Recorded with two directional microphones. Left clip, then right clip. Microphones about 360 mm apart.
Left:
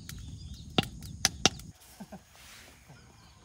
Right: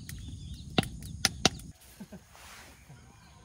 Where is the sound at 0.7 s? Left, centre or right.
Centre.